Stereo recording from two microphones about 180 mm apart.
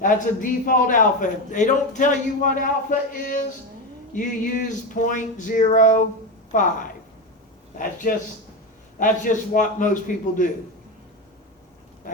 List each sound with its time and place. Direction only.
0.0 s a man's voice: 50° left (ahead or behind)